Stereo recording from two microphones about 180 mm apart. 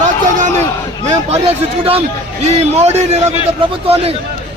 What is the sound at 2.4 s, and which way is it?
Speech, 35° right (ahead or behind).